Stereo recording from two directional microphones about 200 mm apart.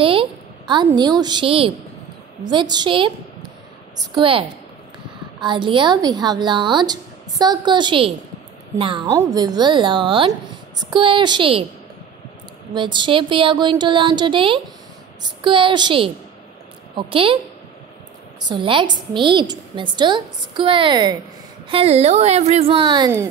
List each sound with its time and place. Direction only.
0.0 s a sound: 25° right (ahead or behind)
0.8 s a woman's voice: 20° right (ahead or behind)
12.7 s a woman's voice: 25° right (ahead or behind)
18.5 s a woman's voice: 25° right (ahead or behind)